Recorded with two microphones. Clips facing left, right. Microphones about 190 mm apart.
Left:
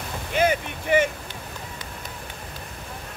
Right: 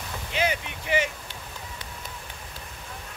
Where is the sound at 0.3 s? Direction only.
50° left (ahead or behind).